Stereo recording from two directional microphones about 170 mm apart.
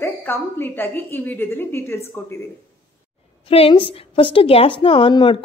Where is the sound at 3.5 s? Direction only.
35° left (ahead or behind).